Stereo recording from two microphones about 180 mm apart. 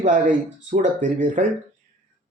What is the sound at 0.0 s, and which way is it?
Speech, 45° right (ahead or behind).